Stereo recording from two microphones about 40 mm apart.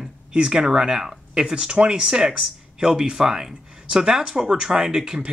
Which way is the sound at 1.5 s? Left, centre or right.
Right.